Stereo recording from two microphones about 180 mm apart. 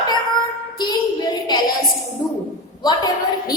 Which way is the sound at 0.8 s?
25° left (ahead or behind).